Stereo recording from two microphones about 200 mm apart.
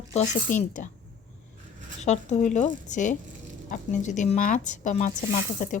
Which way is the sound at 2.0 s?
35° left (ahead or behind).